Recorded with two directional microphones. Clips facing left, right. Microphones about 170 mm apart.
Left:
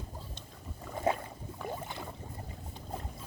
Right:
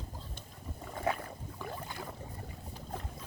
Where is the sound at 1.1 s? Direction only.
20° left (ahead or behind).